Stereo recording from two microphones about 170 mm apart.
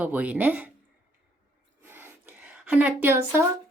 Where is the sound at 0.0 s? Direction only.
10° right (ahead or behind).